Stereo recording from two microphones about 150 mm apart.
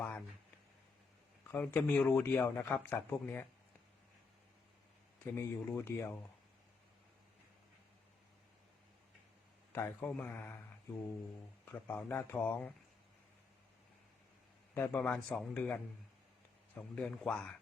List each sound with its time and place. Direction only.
1.5 s a man's voice: 10° left (ahead or behind)
5.2 s a man's voice: 15° left (ahead or behind)
9.7 s a man's voice: 15° left (ahead or behind)
11.6 s a man's voice: 15° left (ahead or behind)
14.8 s a man's voice: 10° left (ahead or behind)